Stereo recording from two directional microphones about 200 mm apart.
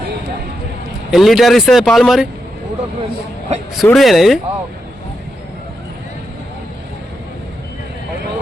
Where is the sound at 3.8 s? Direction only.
Centre (ahead or behind).